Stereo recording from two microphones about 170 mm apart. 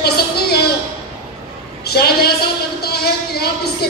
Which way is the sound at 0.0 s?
70° left (ahead or behind).